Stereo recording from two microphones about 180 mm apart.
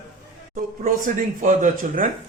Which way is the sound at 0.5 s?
50° right (ahead or behind).